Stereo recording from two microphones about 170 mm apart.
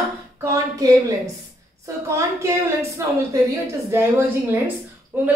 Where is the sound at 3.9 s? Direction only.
15° right (ahead or behind).